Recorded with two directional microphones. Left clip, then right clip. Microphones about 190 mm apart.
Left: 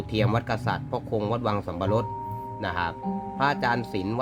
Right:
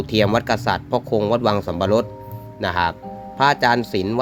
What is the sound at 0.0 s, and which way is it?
Speech, 35° right (ahead or behind).